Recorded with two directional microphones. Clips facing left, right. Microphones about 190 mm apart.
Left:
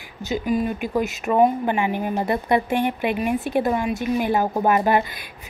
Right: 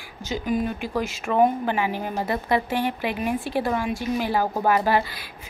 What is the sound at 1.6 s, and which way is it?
A woman's voice, 20° left (ahead or behind).